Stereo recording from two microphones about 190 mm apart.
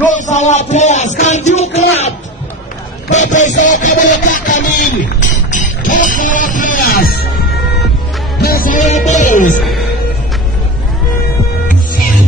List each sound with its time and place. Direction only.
0.1 s music: 40° left (ahead or behind)
3.1 s a sound: 40° left (ahead or behind)
5.9 s music: 45° left (ahead or behind)
8.4 s music: 50° left (ahead or behind)
9.6 s music: centre (ahead or behind)